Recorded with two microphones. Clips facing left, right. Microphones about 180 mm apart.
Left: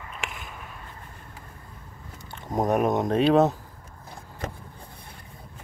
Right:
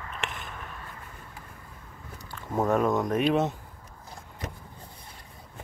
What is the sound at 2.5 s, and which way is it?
Speech, 15° left (ahead or behind).